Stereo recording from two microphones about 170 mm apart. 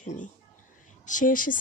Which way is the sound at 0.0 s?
45° left (ahead or behind).